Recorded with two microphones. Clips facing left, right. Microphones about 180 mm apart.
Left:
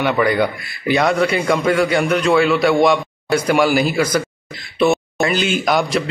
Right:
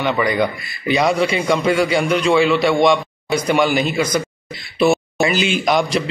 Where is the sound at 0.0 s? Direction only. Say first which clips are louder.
Left 2 dB; 5° left (ahead or behind).